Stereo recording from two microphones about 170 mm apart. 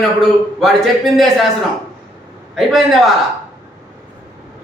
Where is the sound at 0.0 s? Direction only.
Centre (ahead or behind).